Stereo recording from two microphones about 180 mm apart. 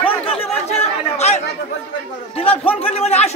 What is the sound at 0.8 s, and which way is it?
Chatter, 35° left (ahead or behind).